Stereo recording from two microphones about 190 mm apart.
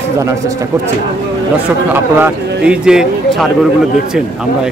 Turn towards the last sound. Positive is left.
turn(degrees=-5)  # may be behind; listen again after turning